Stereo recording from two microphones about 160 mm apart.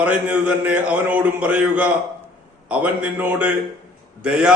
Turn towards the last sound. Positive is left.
turn(degrees=-5)  # may be behind; listen again after turning